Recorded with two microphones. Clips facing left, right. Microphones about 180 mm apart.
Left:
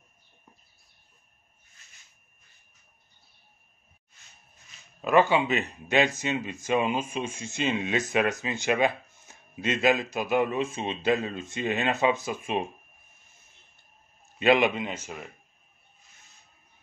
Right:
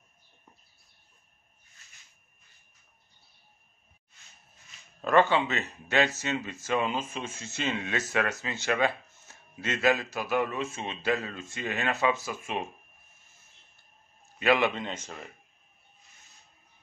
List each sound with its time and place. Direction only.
5.0 s speech: 10° left (ahead or behind)
14.4 s a man's voice: 20° left (ahead or behind)
14.7 s speech: 10° left (ahead or behind)